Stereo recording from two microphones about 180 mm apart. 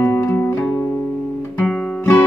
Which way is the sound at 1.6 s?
10° left (ahead or behind).